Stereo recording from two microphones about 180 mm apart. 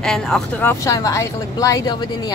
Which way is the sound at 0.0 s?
5° left (ahead or behind).